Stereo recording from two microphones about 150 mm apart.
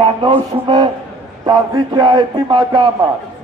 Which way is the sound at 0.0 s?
35° right (ahead or behind).